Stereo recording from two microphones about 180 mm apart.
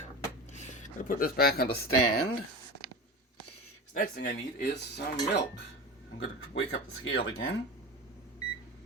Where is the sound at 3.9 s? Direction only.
50° left (ahead or behind).